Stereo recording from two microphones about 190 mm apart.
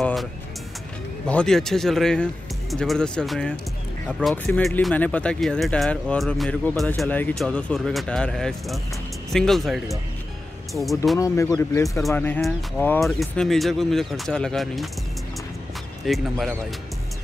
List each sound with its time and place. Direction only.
0.0 s music: centre (ahead or behind)
1.2 s speech: 5° left (ahead or behind)
11.1 s speech: 15° left (ahead or behind); by 14.9 s centre (ahead or behind)
16.1 s speech: centre (ahead or behind)